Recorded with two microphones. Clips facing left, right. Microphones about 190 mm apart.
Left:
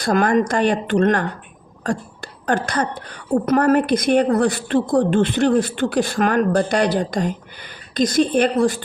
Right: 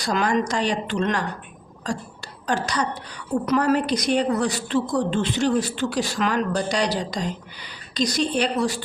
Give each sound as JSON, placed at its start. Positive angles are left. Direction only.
{"t": 0.0, "sound": "a woman's voice", "side_deg": 55}